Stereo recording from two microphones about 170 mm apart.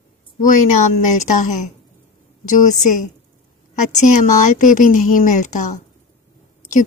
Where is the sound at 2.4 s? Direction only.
50° left (ahead or behind).